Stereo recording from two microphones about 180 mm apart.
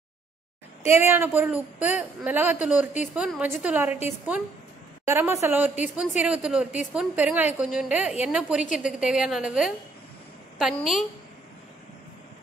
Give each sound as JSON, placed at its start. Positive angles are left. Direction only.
{"t": 1.0, "sound": "a woman's voice", "side_deg": -10}
{"t": 5.0, "sound": "a woman's voice", "side_deg": -15}